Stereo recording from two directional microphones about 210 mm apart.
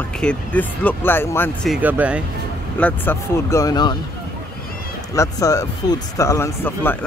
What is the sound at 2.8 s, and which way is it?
Speech, 10° left (ahead or behind).